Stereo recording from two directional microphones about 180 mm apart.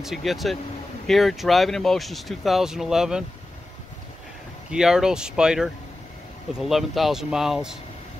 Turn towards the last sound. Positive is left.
turn(degrees=-5)  # may be behind; listen again after turning